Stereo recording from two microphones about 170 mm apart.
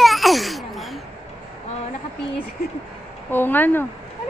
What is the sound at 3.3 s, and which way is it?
Speech, 10° left (ahead or behind).